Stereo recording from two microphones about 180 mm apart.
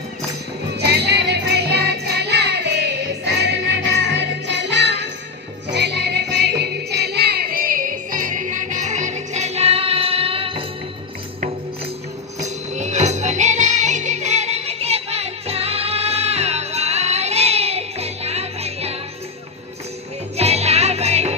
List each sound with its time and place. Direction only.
0.7 s music: 65° right (ahead or behind); by 10.6 s 30° right (ahead or behind)
12.4 s music: 40° right (ahead or behind)
20.3 s music: 35° right (ahead or behind)